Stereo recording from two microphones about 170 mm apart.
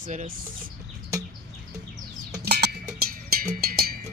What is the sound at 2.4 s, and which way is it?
Music, 70° right (ahead or behind).